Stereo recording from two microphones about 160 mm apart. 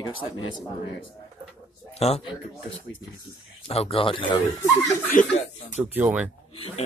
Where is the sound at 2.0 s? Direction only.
40° left (ahead or behind).